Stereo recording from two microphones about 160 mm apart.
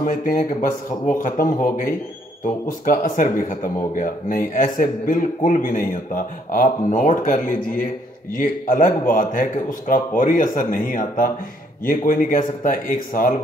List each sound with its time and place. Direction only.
0.0 s a man's voice: 55° left (ahead or behind)